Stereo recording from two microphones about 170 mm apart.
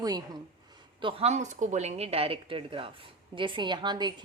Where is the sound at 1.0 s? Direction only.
35° right (ahead or behind).